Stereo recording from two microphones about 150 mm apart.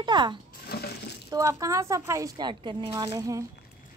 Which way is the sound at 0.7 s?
90° left.